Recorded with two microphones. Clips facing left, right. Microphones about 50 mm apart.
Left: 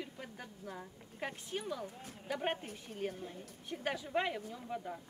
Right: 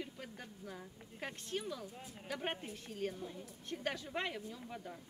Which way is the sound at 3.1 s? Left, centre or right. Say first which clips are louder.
Even; left.